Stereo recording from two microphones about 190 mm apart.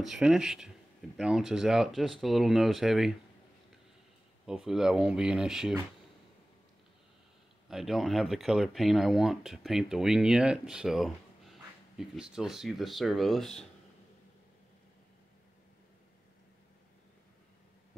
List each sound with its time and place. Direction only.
0.0 s speech: centre (ahead or behind)
4.5 s speech: 5° right (ahead or behind)
7.6 s speech: centre (ahead or behind)